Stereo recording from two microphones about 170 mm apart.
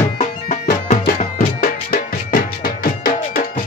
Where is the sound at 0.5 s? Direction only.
45° left (ahead or behind).